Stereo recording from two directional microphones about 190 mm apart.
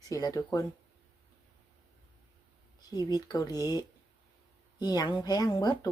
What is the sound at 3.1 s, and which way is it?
Speech, 20° left (ahead or behind).